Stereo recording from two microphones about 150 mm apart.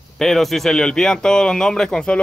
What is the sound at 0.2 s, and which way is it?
Speech, centre (ahead or behind).